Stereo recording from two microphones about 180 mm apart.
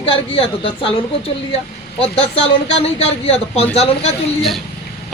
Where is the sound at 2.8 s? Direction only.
35° left (ahead or behind).